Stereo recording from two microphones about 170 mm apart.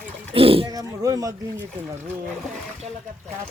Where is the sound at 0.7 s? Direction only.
20° right (ahead or behind).